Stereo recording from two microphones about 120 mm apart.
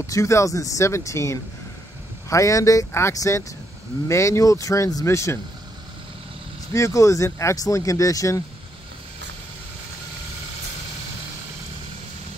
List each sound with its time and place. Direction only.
0.0 s speech: 25° left (ahead or behind)
6.7 s speech: 25° left (ahead or behind)